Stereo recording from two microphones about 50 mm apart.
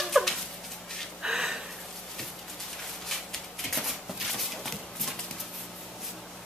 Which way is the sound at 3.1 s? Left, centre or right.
Centre.